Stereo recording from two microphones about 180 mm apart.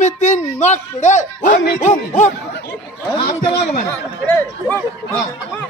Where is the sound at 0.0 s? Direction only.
40° left (ahead or behind).